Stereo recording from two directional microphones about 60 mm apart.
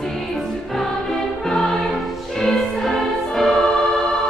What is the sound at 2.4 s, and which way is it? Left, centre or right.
Choir, centre.